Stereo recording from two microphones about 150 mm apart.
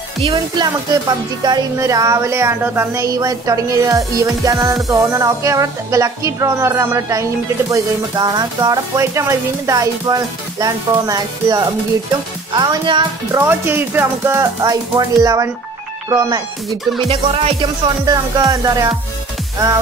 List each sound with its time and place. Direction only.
0.3 s speech: 25° right (ahead or behind)
13.4 s speech: 15° right (ahead or behind)
17.1 s music: 40° right (ahead or behind)
18.0 s speech: 25° right (ahead or behind)